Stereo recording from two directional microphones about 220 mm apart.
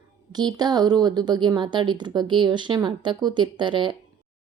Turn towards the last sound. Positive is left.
turn(degrees=-20)  # may be behind; listen again after turning